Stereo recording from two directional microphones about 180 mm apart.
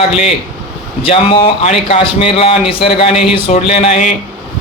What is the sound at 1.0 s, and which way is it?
A man's voice, 30° left (ahead or behind).